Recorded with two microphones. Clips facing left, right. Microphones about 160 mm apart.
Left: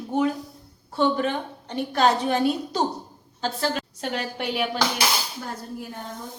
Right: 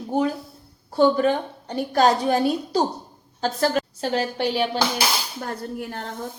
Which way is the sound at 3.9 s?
30° right (ahead or behind).